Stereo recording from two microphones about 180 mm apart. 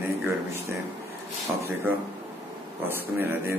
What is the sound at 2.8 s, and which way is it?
Speech, 10° right (ahead or behind).